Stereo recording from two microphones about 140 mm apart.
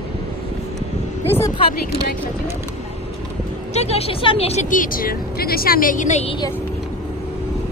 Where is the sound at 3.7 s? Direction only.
50° left (ahead or behind).